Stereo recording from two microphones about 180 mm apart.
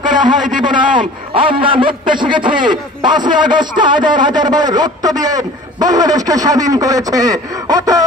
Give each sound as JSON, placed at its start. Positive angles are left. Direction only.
{"t": 0.7, "sound": "a man's voice", "side_deg": -25}